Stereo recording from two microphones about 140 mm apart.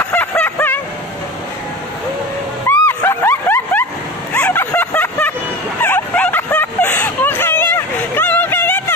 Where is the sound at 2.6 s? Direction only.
20° left (ahead or behind).